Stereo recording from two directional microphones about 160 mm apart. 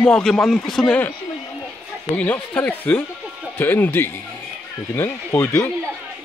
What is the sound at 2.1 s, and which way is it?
Speech, 10° left (ahead or behind).